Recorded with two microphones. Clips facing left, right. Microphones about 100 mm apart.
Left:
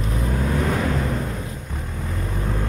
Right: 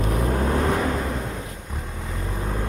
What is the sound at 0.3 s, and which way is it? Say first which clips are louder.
Vehicle: even; 35° right (ahead or behind).